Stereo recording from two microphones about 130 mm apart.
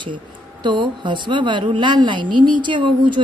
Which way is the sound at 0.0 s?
35° right (ahead or behind).